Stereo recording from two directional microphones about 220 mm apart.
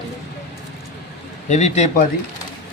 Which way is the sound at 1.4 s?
30° left (ahead or behind).